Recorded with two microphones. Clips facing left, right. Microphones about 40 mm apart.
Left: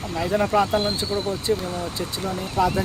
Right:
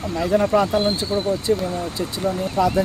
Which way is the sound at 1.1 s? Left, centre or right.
Right.